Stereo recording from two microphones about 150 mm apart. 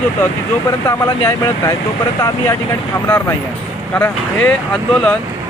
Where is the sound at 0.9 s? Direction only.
20° left (ahead or behind).